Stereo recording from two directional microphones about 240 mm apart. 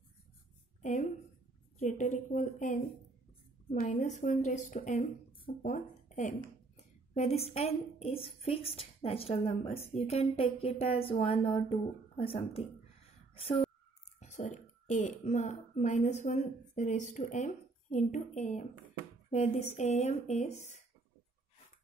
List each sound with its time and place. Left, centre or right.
1.8 s speech: left
3.8 s a woman's voice: left